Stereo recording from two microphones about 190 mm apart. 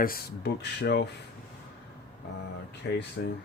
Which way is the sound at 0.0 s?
55° left (ahead or behind).